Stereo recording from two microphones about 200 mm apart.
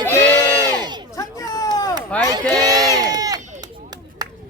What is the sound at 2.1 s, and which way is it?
Crowd, 5° left (ahead or behind).